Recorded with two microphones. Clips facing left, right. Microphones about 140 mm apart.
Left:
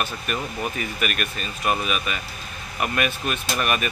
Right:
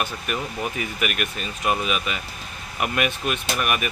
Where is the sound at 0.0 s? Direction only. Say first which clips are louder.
Even; 15° right (ahead or behind).